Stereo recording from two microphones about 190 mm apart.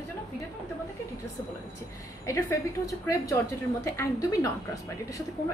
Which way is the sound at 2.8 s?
15° left (ahead or behind).